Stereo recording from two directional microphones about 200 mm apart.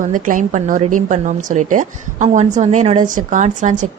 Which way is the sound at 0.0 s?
40° right (ahead or behind).